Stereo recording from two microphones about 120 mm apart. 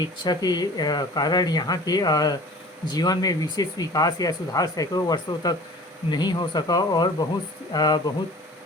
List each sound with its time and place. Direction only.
0.0 s speech: 35° left (ahead or behind)